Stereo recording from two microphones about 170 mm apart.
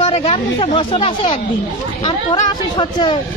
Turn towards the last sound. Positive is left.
turn(degrees=25)  # may be behind; listen again after turning